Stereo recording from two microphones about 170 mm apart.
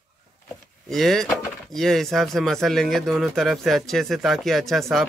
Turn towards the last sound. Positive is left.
turn(degrees=0)  # may be behind; listen again after turning